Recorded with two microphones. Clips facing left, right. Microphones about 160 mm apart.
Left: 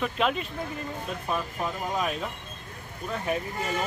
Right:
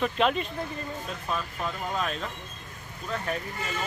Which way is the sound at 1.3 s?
15° left (ahead or behind).